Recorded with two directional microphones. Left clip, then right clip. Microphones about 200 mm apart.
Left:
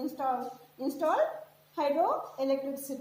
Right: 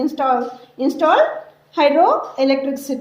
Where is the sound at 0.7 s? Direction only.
40° right (ahead or behind).